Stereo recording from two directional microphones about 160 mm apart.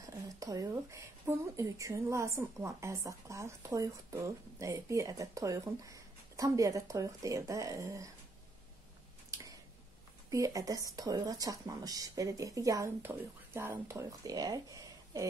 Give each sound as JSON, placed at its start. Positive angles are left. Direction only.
{"t": 0.0, "sound": "speech", "side_deg": -20}
{"t": 9.3, "sound": "a sound", "side_deg": -20}
{"t": 10.3, "sound": "speech", "side_deg": -20}